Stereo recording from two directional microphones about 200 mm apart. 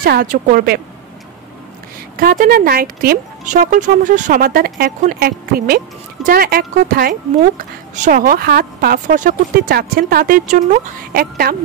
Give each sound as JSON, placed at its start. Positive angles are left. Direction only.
{"t": 0.0, "sound": "speech", "side_deg": -45}
{"t": 2.1, "sound": "speech", "side_deg": -45}